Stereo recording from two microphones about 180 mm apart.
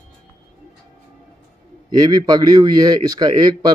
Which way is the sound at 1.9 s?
20° right (ahead or behind).